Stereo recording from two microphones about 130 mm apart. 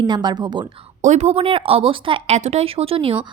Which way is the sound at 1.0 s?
60° right (ahead or behind).